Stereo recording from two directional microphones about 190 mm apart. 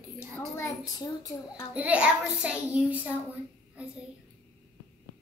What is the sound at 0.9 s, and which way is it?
Speech, 20° left (ahead or behind).